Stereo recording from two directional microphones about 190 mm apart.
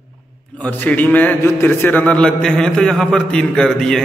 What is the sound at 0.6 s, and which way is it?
Mantra, 10° left (ahead or behind).